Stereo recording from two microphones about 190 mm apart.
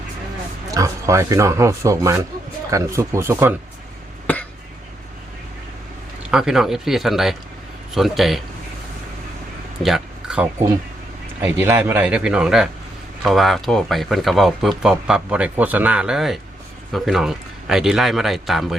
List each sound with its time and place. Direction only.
0.7 s speech: 15° right (ahead or behind)
4.3 s throat clearing: 10° left (ahead or behind)
6.3 s speech: 5° right (ahead or behind)
9.8 s speech: 5° right (ahead or behind)
11.6 s speech: 10° right (ahead or behind)